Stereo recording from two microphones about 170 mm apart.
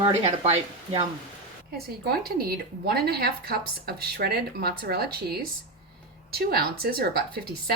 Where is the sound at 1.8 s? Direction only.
65° right (ahead or behind).